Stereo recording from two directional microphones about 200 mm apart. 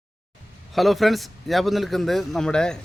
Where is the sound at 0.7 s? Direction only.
Centre (ahead or behind).